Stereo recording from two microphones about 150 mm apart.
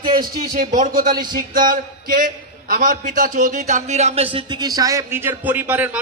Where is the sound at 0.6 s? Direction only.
60° right (ahead or behind).